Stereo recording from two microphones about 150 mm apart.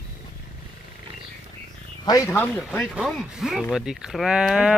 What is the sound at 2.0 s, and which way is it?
Speech, 25° left (ahead or behind).